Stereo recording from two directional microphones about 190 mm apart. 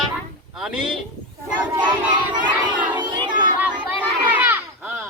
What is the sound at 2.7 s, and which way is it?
Crowd, 25° right (ahead or behind).